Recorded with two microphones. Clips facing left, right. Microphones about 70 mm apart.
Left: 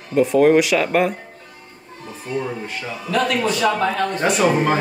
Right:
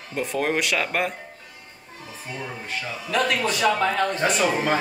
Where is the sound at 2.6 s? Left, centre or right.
Centre.